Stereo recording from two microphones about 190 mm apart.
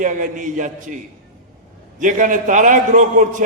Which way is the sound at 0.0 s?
40° right (ahead or behind).